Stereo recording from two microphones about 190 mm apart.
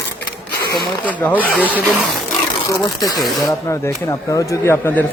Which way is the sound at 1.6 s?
10° right (ahead or behind).